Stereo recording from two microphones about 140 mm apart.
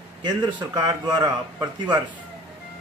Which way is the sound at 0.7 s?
30° right (ahead or behind).